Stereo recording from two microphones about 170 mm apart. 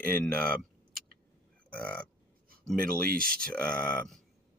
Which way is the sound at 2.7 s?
60° right (ahead or behind).